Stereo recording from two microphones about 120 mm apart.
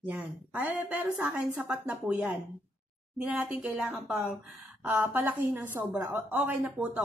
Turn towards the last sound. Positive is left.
turn(degrees=-15)  # may be behind; listen again after turning